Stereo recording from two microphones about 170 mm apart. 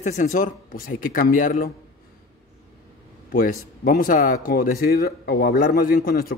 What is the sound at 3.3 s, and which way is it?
Speech, 55° left (ahead or behind).